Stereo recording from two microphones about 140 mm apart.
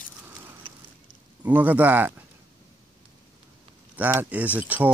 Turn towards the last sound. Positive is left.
turn(degrees=-10)  # may be behind; listen again after turning